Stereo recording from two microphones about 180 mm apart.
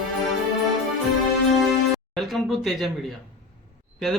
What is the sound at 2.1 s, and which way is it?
A man's voice, centre (ahead or behind).